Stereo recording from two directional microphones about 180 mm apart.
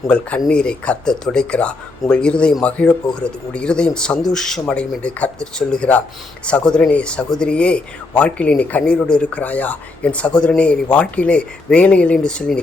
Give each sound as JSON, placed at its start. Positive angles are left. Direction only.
{"t": 0.1, "sound": "speech", "side_deg": 5}